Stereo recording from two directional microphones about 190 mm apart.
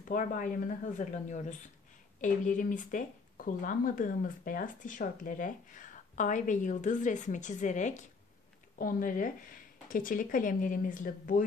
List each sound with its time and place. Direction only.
0.1 s speech: 45° left (ahead or behind)